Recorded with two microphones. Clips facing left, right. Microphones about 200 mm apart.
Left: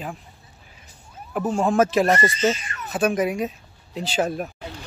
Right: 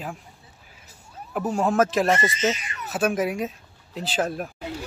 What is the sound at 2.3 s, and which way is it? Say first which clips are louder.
Speech: left 3 dB; 20° right (ahead or behind).